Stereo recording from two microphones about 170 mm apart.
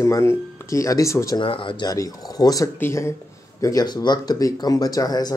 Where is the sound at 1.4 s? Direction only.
30° left (ahead or behind).